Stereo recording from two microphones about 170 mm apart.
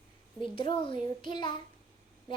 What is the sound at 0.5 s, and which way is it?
A child's voice, 30° left (ahead or behind).